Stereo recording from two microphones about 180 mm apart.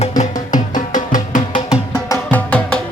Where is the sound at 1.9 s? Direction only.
15° left (ahead or behind).